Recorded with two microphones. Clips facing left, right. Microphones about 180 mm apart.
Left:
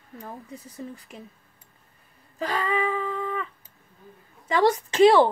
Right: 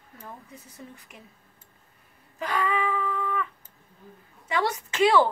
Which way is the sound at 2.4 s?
30° left (ahead or behind).